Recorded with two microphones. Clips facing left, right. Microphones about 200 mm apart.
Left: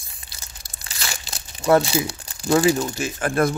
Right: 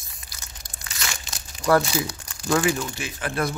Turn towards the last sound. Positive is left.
turn(degrees=50)  # may be behind; listen again after turning